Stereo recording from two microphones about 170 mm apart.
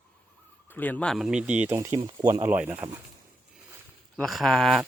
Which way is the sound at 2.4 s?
10° right (ahead or behind).